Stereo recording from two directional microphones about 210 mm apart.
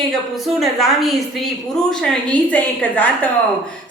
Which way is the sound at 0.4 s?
Centre (ahead or behind).